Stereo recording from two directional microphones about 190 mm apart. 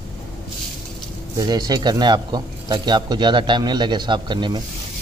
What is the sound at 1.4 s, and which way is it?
Speech, 20° right (ahead or behind).